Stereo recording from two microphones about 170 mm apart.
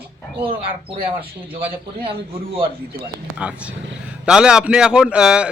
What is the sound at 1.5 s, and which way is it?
Speech, 30° right (ahead or behind).